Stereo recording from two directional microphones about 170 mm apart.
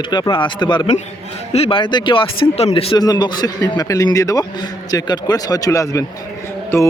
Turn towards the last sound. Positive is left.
turn(degrees=15)  # may be behind; listen again after turning